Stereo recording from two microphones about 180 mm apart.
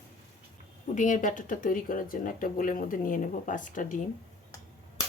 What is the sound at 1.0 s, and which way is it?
Speech, 45° left (ahead or behind).